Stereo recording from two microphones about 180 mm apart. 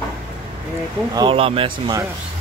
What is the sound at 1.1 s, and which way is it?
Speech, 30° right (ahead or behind).